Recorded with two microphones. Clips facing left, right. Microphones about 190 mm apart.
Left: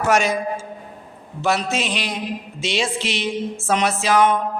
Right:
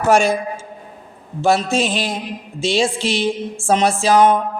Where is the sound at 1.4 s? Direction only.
30° right (ahead or behind).